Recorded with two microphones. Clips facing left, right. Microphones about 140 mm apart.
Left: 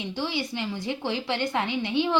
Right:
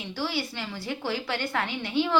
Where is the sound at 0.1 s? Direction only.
20° left (ahead or behind).